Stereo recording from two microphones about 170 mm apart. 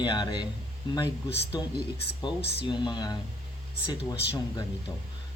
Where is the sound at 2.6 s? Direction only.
25° left (ahead or behind).